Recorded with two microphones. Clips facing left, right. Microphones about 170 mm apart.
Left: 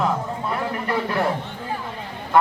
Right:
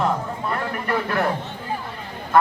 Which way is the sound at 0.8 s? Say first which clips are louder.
Right 1 dB; 20° left (ahead or behind).